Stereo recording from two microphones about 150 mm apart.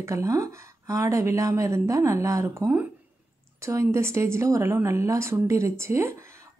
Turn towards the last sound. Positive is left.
turn(degrees=-20)  # may be behind; listen again after turning